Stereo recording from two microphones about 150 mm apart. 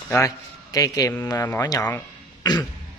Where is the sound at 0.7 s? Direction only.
25° left (ahead or behind).